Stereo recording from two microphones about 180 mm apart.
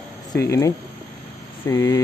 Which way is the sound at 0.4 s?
15° left (ahead or behind).